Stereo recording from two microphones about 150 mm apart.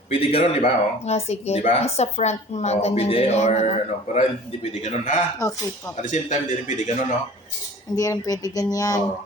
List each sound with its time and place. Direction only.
0.1 s speech: 40° left (ahead or behind)
5.4 s speech: 20° left (ahead or behind)
6.0 s speech: 55° left (ahead or behind)
7.9 s speech: 25° left (ahead or behind)